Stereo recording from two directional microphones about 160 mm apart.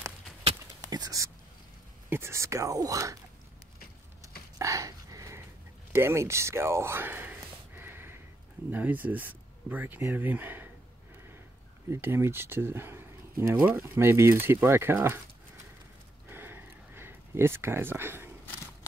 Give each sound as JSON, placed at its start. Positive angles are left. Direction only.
{"t": 0.7, "sound": "whispering", "side_deg": -25}
{"t": 2.0, "sound": "speech", "side_deg": -15}
{"t": 4.6, "sound": "dog", "side_deg": -20}
{"t": 5.9, "sound": "a sound", "side_deg": -15}
{"t": 8.6, "sound": "speech", "side_deg": -10}
{"t": 11.9, "sound": "speech", "side_deg": -15}
{"t": 16.3, "sound": "a sound", "side_deg": -15}